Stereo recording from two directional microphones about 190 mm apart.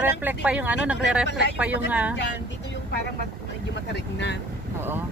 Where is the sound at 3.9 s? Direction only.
65° left (ahead or behind).